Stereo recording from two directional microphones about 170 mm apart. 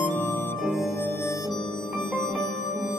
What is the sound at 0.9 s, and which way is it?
Music, 10° left (ahead or behind).